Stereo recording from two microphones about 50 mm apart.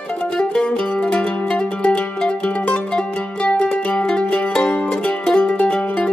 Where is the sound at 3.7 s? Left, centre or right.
Left.